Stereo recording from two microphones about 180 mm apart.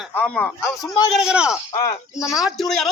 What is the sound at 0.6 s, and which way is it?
Speech, 20° left (ahead or behind).